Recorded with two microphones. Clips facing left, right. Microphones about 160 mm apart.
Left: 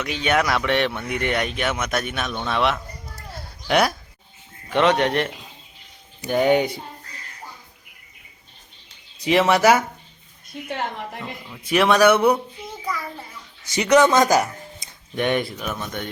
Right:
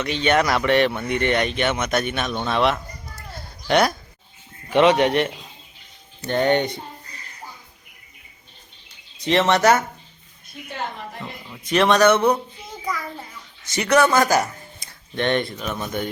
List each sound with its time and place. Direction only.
0.0 s speech: 5° left (ahead or behind)
3.3 s a sound: centre (ahead or behind)
4.7 s speech: 5° right (ahead or behind)
9.2 s speech: 10° left (ahead or behind)
11.2 s speech: centre (ahead or behind)
13.7 s speech: 15° left (ahead or behind); by 16.0 s 5° right (ahead or behind)